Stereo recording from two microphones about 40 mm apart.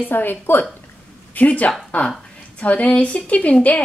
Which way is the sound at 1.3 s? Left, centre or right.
Left.